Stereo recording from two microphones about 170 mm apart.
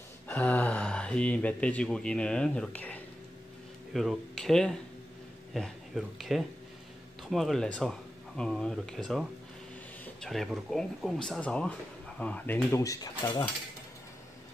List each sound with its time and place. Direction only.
0.3 s speech: 10° left (ahead or behind)